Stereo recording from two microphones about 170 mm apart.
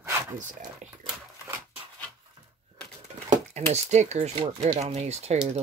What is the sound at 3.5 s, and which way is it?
Speech, 40° right (ahead or behind).